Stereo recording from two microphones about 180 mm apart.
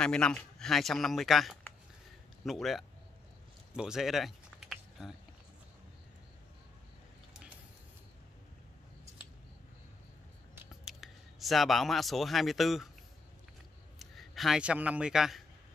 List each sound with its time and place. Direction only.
0.0 s speech: 5° left (ahead or behind)
3.7 s typing: 5° right (ahead or behind)
10.7 s speech: centre (ahead or behind)
13.9 s a man's voice: centre (ahead or behind)